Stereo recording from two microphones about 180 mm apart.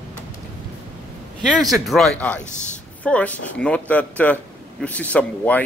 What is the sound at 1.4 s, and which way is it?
Speech, centre (ahead or behind).